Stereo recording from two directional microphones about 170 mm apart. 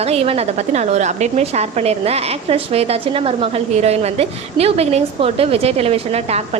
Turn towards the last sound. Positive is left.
turn(degrees=-40)  # may be behind; listen again after turning